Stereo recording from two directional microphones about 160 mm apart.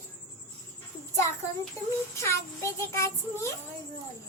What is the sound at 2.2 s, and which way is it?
Speech, 20° left (ahead or behind).